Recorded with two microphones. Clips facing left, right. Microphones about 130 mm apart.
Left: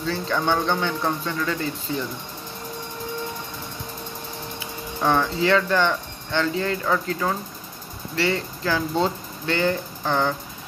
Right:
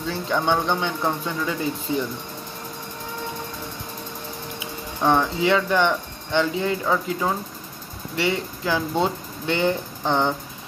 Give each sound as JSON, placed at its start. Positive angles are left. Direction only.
{"t": 0.0, "sound": "speech", "side_deg": -15}
{"t": 4.6, "sound": "speech", "side_deg": -15}